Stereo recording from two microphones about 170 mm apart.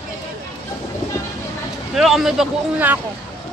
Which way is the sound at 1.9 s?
Centre (ahead or behind).